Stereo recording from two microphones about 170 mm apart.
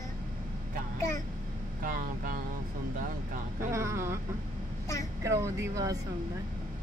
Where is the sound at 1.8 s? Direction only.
55° right (ahead or behind).